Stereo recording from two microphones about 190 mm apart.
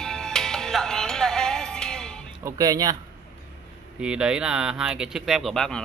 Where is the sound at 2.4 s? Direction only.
20° right (ahead or behind).